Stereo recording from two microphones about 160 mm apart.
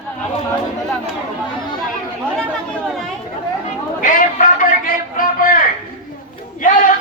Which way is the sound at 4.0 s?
60° left (ahead or behind).